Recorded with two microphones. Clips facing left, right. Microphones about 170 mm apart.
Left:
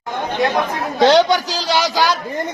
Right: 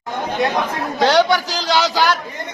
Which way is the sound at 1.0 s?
20° left (ahead or behind).